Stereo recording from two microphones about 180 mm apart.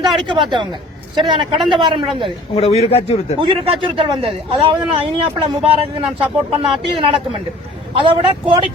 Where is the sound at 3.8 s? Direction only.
30° right (ahead or behind).